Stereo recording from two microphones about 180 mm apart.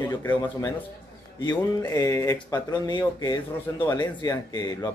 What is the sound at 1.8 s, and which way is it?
Speech, 15° left (ahead or behind).